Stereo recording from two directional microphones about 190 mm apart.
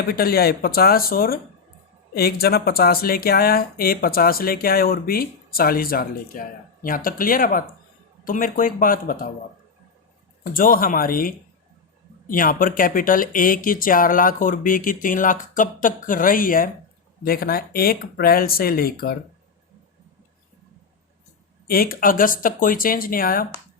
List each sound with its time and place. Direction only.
0.1 s speech: 50° left (ahead or behind)
10.4 s speech: 50° left (ahead or behind)
21.7 s speech: 50° left (ahead or behind)